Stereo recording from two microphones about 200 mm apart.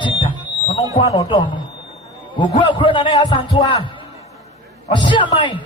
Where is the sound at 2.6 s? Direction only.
25° left (ahead or behind).